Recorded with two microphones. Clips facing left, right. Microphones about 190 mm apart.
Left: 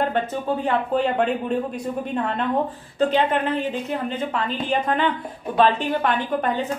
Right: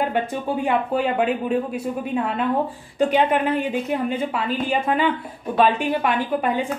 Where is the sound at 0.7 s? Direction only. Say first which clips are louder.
Even; 5° right (ahead or behind).